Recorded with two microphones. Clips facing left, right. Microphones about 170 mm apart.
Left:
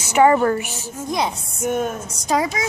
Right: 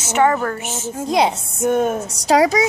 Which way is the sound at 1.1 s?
75° right (ahead or behind).